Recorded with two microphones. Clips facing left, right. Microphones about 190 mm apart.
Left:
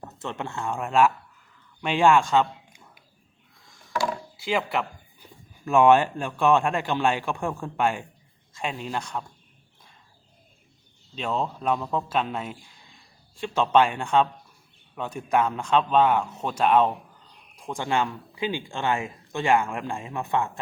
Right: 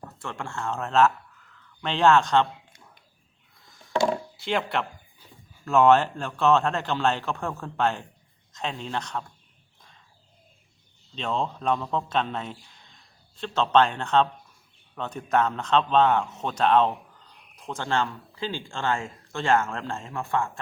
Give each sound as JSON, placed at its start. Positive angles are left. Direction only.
{"t": 0.0, "sound": "a man's voice", "side_deg": 20}
{"t": 4.4, "sound": "speech", "side_deg": 5}
{"t": 11.1, "sound": "a man's voice", "side_deg": 5}